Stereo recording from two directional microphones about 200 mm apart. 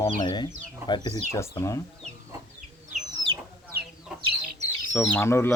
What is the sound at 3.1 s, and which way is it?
Chicken, 20° right (ahead or behind).